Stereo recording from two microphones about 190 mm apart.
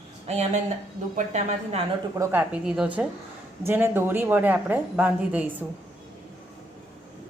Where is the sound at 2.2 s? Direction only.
10° right (ahead or behind).